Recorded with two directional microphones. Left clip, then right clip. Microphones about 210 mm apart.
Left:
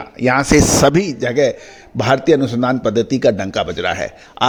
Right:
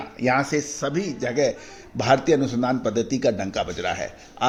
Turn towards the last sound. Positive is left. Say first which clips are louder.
# left 8 dB
turn(degrees=40)  # may be behind; listen again after turning